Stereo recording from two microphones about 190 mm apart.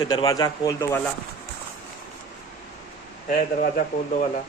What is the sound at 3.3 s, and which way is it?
Speech, 50° left (ahead or behind).